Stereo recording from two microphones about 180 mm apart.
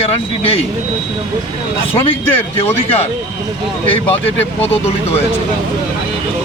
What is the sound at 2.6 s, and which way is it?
Speech, 35° left (ahead or behind).